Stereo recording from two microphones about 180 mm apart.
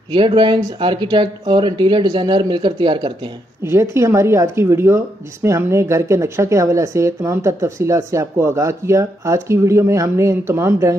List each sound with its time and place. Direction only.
0.1 s speech: 25° right (ahead or behind)
3.6 s speech: 15° right (ahead or behind)